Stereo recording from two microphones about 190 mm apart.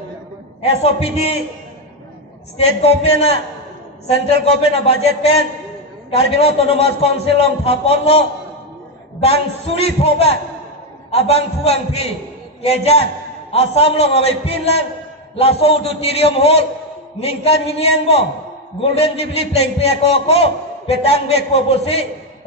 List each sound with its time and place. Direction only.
0.6 s a man's voice: 30° left (ahead or behind)
2.5 s a man's voice: 35° left (ahead or behind)